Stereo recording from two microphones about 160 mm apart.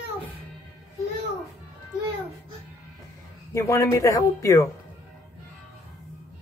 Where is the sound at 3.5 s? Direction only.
20° left (ahead or behind).